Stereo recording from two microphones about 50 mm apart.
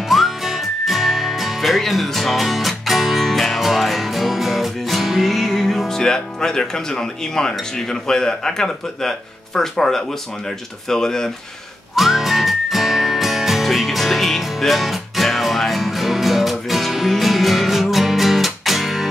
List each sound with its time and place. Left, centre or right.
0.1 s music: centre
10.9 s speech: centre
11.9 s music: centre